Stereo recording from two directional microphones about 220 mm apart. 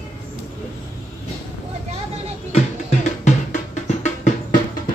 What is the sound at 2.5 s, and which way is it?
Music, 35° left (ahead or behind).